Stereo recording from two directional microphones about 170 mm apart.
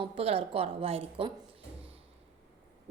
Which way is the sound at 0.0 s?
35° right (ahead or behind).